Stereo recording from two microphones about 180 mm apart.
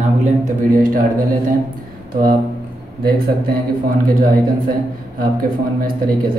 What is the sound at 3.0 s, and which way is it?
Speech, 55° right (ahead or behind).